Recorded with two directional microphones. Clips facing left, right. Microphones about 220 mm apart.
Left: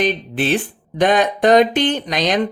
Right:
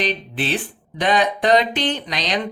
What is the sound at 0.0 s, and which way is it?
Speech, 50° left (ahead or behind).